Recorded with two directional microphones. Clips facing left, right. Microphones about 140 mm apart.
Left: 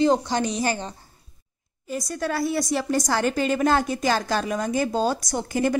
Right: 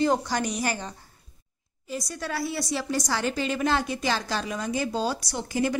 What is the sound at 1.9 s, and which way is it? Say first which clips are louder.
A woman's voice: left 5 dB; 50° left (ahead or behind).